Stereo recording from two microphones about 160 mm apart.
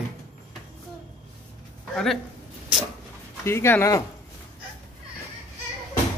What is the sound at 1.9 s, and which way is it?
Speech, centre (ahead or behind).